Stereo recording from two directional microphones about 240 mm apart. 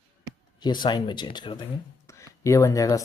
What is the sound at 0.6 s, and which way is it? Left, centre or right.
Speech, centre.